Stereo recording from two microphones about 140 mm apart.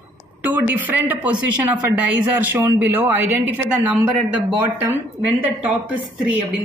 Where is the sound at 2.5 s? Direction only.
15° right (ahead or behind).